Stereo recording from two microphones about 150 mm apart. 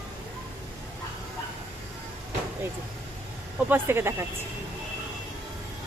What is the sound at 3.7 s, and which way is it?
Speech, 15° right (ahead or behind).